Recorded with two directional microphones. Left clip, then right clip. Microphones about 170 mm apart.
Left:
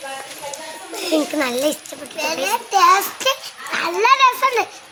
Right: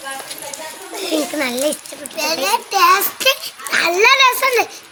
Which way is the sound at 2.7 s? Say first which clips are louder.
Left 1 dB; centre (ahead or behind).